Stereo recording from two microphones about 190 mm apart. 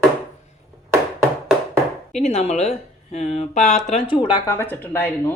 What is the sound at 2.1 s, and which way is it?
Speech, 35° left (ahead or behind).